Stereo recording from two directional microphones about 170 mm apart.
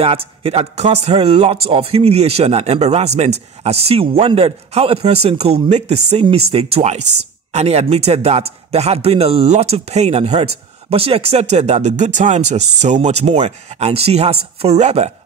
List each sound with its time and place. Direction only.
0.0 s a man's voice: 35° right (ahead or behind)